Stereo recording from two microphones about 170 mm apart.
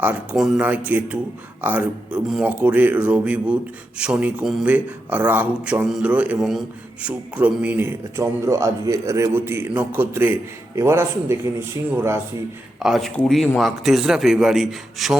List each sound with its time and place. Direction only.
0.0 s a man's voice: 10° right (ahead or behind)
12.8 s a man's voice: centre (ahead or behind)